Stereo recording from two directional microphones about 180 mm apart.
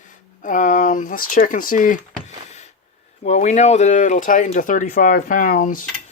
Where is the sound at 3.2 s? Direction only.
40° left (ahead or behind).